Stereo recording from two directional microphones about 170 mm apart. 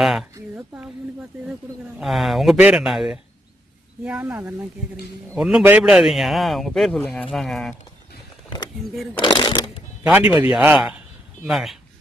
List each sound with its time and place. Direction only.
0.0 s a man's voice: centre (ahead or behind)
2.0 s a man's voice: centre (ahead or behind)
8.8 s a man's voice: centre (ahead or behind)
9.2 s speech: 25° left (ahead or behind)
10.1 s a man's voice: 10° right (ahead or behind)